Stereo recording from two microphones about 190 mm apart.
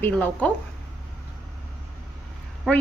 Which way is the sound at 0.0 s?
10° left (ahead or behind).